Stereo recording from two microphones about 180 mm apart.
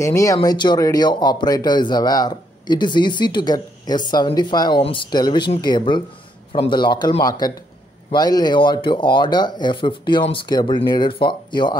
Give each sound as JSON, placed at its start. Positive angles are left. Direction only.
{"t": 0.0, "sound": "speech", "side_deg": 15}